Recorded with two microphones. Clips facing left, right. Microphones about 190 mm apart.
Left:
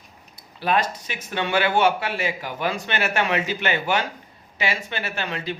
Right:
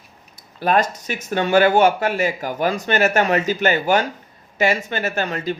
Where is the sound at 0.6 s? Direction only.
45° right (ahead or behind).